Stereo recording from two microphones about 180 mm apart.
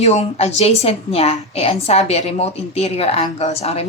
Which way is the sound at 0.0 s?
35° left (ahead or behind).